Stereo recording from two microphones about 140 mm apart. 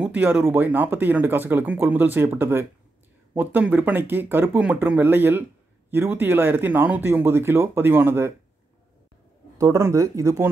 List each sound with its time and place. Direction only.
0.0 s speech: 10° right (ahead or behind)
9.6 s speech: 20° right (ahead or behind)